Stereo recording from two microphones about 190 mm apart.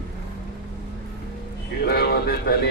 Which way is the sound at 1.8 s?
55° left (ahead or behind).